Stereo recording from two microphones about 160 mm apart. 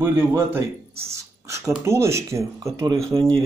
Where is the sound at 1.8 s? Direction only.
15° right (ahead or behind).